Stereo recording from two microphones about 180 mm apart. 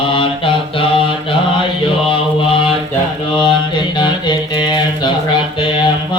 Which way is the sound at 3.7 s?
25° left (ahead or behind).